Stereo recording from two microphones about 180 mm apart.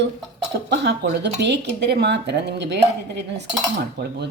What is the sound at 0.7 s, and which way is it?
Speech, 70° right (ahead or behind).